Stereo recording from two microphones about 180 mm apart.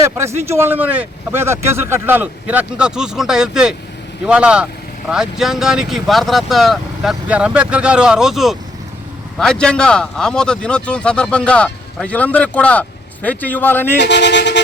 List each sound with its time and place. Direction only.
0.0 s speech: 15° right (ahead or behind); by 13.9 s 10° left (ahead or behind)
14.0 s speech: 75° left (ahead or behind)